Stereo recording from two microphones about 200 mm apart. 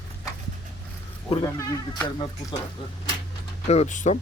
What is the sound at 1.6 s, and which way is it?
Speech, 20° left (ahead or behind).